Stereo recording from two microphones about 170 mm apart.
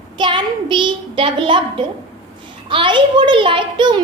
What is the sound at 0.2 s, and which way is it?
A child's voice, 25° right (ahead or behind).